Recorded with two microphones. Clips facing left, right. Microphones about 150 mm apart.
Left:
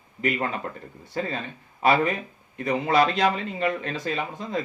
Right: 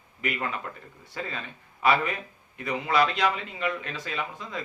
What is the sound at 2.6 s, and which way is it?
Speech, 40° left (ahead or behind).